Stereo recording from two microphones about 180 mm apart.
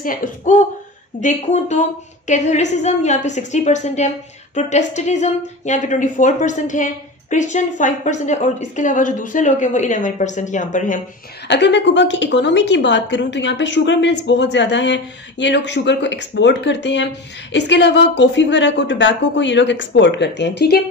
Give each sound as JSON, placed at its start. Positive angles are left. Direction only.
{"t": 0.0, "sound": "a woman's voice", "side_deg": 50}
{"t": 11.4, "sound": "a woman's voice", "side_deg": 70}